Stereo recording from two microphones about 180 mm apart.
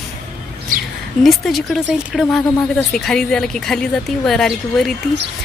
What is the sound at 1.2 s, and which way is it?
Speech, centre (ahead or behind).